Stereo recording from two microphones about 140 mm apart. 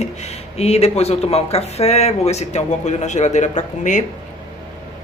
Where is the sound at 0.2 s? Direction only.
50° left (ahead or behind).